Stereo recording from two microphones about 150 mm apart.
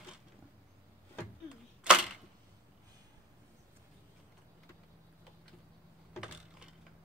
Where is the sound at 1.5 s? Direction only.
5° right (ahead or behind).